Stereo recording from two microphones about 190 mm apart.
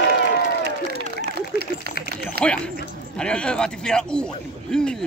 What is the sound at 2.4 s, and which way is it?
A man's voice, 5° left (ahead or behind).